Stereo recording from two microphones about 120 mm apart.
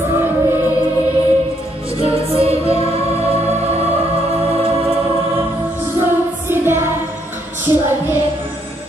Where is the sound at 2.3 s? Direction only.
55° right (ahead or behind).